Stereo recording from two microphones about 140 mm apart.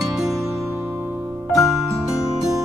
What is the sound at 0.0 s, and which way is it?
Music, centre (ahead or behind).